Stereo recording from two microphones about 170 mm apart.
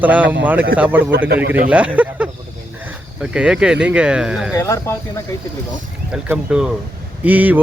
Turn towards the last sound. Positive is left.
turn(degrees=-10)  # may be behind; listen again after turning